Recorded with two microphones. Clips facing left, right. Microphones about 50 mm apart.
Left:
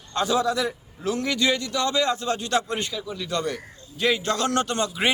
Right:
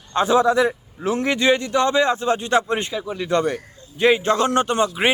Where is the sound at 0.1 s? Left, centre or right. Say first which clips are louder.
Right 6 dB; right.